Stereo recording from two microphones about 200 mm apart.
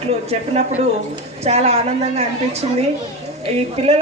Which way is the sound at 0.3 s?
30° right (ahead or behind).